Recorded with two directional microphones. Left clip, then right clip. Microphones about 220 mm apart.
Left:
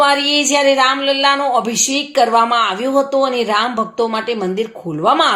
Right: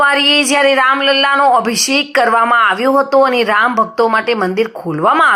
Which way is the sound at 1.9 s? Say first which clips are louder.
Right 2 dB; 40° right (ahead or behind).